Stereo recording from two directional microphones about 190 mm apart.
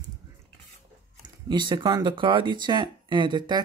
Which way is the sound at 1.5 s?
20° right (ahead or behind).